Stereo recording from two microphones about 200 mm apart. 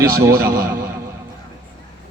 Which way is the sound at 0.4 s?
45° right (ahead or behind).